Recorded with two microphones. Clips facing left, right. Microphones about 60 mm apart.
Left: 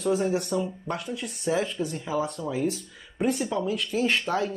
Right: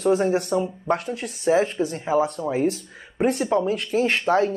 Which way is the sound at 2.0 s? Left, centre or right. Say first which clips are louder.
Right 9 dB; right.